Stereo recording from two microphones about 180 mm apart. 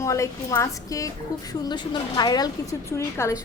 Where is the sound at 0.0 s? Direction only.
15° left (ahead or behind).